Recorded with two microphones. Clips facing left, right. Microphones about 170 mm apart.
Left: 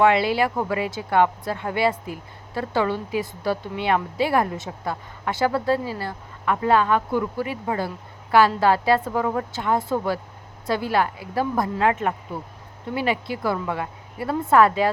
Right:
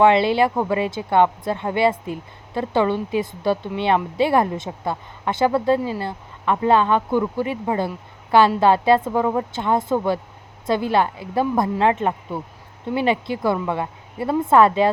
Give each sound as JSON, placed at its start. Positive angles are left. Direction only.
{"t": 0.0, "sound": "a woman's voice", "side_deg": -25}